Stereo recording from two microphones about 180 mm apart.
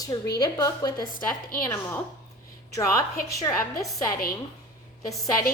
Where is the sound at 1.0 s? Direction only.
55° left (ahead or behind).